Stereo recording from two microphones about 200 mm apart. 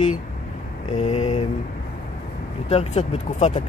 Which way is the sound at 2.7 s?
30° left (ahead or behind).